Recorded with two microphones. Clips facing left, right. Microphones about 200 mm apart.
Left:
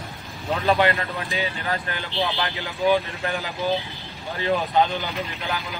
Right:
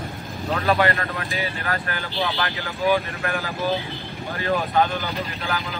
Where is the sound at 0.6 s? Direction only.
20° left (ahead or behind).